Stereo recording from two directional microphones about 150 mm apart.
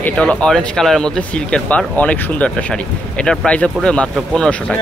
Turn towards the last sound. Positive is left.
turn(degrees=5)  # may be behind; listen again after turning